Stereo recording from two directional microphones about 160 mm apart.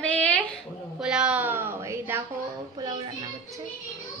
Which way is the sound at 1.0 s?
5° right (ahead or behind).